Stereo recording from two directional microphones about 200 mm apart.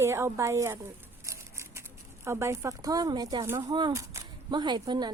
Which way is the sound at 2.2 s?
15° right (ahead or behind).